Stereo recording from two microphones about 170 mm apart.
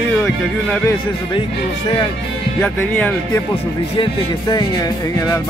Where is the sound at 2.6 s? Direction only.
10° left (ahead or behind).